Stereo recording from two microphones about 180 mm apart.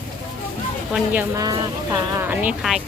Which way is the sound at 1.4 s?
20° right (ahead or behind).